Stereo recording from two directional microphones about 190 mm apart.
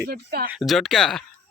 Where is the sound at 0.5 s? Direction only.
Centre (ahead or behind).